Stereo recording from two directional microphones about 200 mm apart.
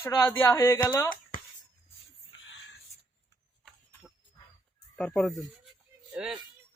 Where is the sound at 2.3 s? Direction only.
70° left (ahead or behind).